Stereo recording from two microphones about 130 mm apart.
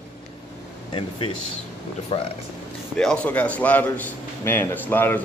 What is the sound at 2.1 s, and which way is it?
Speech, 45° left (ahead or behind).